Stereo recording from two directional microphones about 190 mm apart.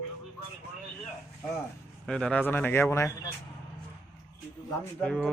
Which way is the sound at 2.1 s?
5° left (ahead or behind).